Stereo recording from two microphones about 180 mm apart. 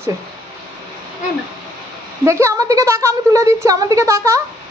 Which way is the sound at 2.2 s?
15° right (ahead or behind).